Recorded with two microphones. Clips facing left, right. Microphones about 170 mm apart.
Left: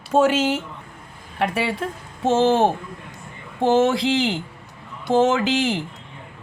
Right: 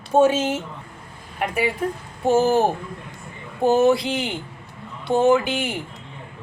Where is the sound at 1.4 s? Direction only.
80° left.